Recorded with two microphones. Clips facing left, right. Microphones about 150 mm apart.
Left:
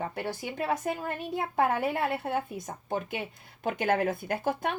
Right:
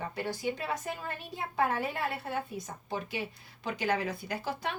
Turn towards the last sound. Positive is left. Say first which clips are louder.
# left 5 dB
turn(degrees=50)  # may be behind; listen again after turning